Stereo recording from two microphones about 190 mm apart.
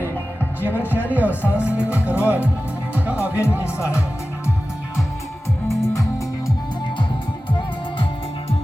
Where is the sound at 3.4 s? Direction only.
15° left (ahead or behind).